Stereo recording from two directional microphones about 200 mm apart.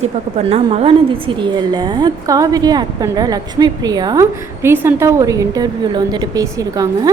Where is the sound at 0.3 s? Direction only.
30° right (ahead or behind).